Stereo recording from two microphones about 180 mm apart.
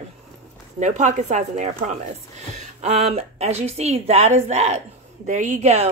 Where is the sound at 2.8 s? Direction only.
35° right (ahead or behind).